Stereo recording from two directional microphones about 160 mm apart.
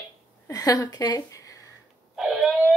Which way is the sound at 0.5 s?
20° left (ahead or behind).